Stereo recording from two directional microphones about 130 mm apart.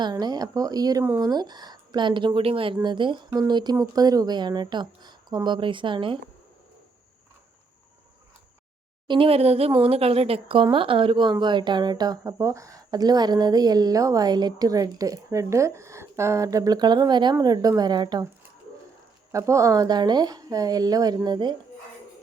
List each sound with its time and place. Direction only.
0.0 s a woman's voice: 30° right (ahead or behind)
9.0 s speech: 45° right (ahead or behind)
19.3 s a woman's voice: 25° right (ahead or behind)